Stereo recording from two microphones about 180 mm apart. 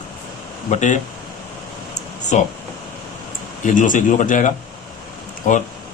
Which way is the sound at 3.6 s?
45° left (ahead or behind).